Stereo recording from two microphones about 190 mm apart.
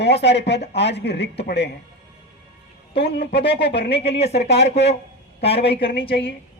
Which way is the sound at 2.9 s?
60° left (ahead or behind).